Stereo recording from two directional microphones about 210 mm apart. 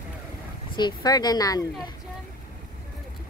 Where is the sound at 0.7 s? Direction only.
20° left (ahead or behind).